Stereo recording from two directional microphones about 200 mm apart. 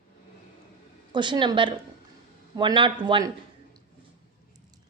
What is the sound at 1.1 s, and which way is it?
A woman's voice, 25° right (ahead or behind).